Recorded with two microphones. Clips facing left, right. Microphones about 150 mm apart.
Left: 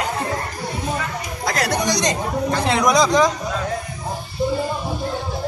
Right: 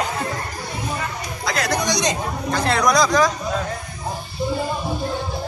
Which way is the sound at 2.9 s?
25° left (ahead or behind).